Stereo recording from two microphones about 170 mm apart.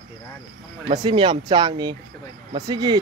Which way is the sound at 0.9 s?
30° right (ahead or behind).